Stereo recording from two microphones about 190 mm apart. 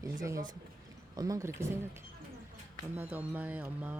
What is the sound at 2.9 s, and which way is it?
Speech, 10° right (ahead or behind).